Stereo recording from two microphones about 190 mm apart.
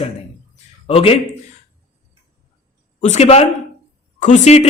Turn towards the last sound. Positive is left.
turn(degrees=35)  # may be behind; listen again after turning